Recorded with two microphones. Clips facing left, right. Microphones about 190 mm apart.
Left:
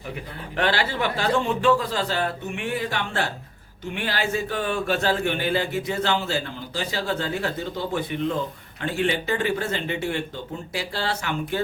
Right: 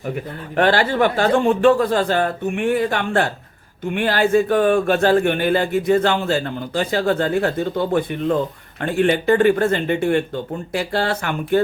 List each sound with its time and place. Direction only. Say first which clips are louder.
0.5 s a man's voice: right 7 dB; 50° right (ahead or behind)